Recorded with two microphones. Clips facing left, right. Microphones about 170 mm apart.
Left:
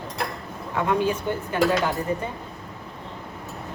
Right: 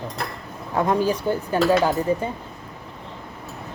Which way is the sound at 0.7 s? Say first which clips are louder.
Right 2 dB; 35° right (ahead or behind).